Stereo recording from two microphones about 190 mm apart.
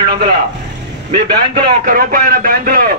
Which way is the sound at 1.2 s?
55° right (ahead or behind).